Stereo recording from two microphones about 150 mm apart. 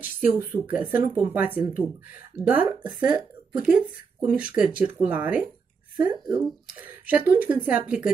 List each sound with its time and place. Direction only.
0.0 s speech: 10° right (ahead or behind)
6.1 s speech: 30° right (ahead or behind)
7.1 s speech: 10° right (ahead or behind)